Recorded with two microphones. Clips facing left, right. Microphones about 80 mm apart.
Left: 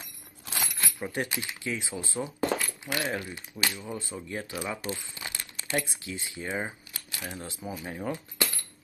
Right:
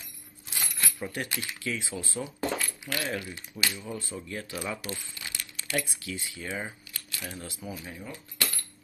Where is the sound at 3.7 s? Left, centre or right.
Centre.